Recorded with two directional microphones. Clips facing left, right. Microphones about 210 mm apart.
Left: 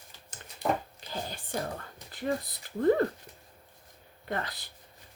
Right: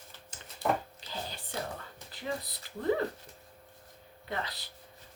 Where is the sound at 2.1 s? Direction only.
50° left (ahead or behind).